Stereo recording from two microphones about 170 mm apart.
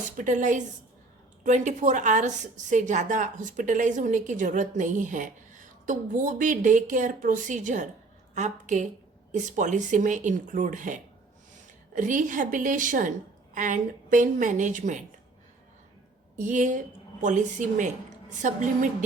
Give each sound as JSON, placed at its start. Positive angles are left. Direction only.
{"t": 0.0, "sound": "a woman's voice", "side_deg": -50}
{"t": 16.3, "sound": "a woman's voice", "side_deg": -45}